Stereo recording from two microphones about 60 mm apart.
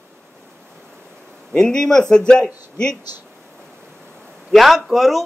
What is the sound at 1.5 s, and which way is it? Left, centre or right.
Speech, centre.